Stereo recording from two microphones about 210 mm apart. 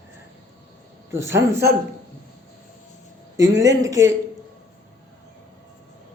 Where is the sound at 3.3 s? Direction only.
15° right (ahead or behind).